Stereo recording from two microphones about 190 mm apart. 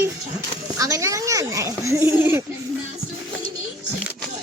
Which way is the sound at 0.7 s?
20° right (ahead or behind).